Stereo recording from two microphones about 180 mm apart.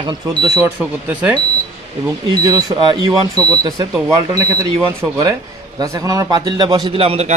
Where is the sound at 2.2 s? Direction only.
25° right (ahead or behind).